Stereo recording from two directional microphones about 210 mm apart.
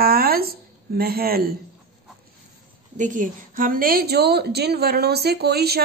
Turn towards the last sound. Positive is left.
turn(degrees=-50)  # may be behind; listen again after turning